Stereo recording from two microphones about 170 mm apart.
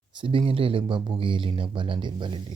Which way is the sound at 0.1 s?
30° right (ahead or behind).